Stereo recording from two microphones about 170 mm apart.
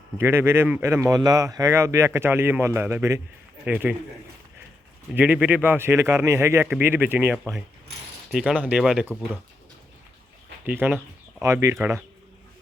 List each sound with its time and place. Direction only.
0.2 s speech: 15° right (ahead or behind)
5.1 s speech: 10° right (ahead or behind)
10.7 s speech: 10° right (ahead or behind)